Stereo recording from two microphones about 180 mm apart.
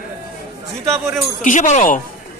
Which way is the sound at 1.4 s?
45° left (ahead or behind).